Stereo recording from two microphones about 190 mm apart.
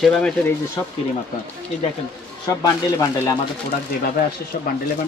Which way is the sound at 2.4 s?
15° left (ahead or behind).